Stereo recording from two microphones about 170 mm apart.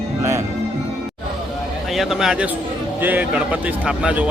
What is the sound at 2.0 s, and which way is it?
A man's voice, centre (ahead or behind).